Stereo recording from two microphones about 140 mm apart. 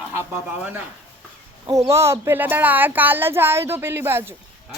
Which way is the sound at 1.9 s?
20° right (ahead or behind).